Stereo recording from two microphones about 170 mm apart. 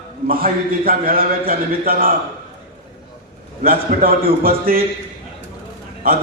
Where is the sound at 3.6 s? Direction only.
60° right (ahead or behind).